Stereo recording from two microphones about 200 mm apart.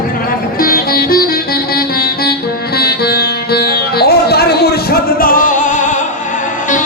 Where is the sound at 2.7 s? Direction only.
50° left (ahead or behind).